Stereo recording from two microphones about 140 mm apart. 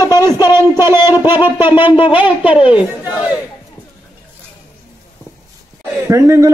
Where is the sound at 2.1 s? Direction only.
10° right (ahead or behind).